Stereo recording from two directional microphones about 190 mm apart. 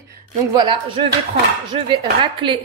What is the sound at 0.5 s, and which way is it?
Speech, 25° right (ahead or behind).